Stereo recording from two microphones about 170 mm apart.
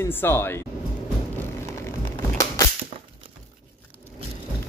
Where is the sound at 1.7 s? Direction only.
15° left (ahead or behind).